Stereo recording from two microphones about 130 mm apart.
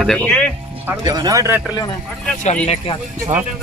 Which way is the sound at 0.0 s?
5° left (ahead or behind).